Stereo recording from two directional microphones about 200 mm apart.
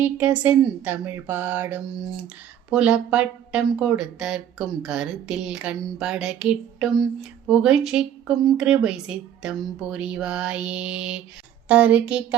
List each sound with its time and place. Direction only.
0.0 s speech: 10° right (ahead or behind)